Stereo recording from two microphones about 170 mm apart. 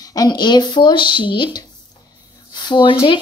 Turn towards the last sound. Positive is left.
turn(degrees=25)  # may be behind; listen again after turning